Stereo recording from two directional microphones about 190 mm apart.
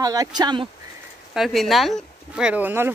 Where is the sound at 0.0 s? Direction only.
20° right (ahead or behind).